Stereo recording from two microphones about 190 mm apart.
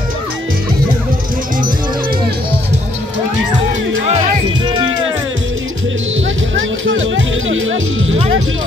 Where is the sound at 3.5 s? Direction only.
85° right.